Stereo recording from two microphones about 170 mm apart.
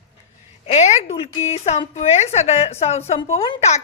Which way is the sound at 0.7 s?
40° left (ahead or behind).